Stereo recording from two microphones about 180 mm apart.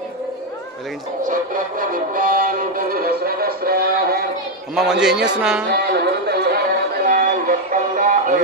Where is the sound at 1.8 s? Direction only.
50° right (ahead or behind).